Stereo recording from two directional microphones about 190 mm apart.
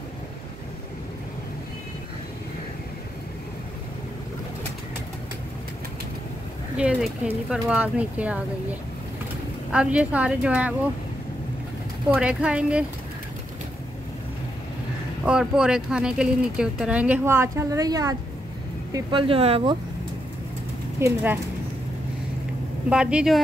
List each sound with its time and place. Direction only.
6.8 s speech: 5° right (ahead or behind)
9.7 s speech: 5° right (ahead or behind)
12.1 s speech: 5° right (ahead or behind)
15.2 s speech: 5° right (ahead or behind); by 19.8 s 30° right (ahead or behind)
21.0 s speech: 10° right (ahead or behind)
22.8 s speech: 5° right (ahead or behind)